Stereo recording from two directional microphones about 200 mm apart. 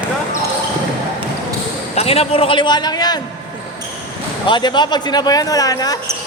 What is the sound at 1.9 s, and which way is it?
Speech, 30° left (ahead or behind).